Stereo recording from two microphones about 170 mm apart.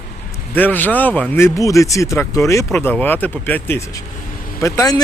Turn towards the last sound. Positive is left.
turn(degrees=20)  # may be behind; listen again after turning